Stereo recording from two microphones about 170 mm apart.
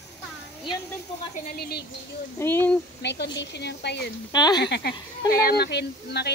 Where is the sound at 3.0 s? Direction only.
90° left.